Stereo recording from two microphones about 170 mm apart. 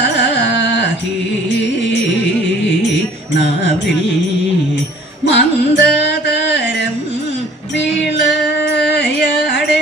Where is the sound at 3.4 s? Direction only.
90° left.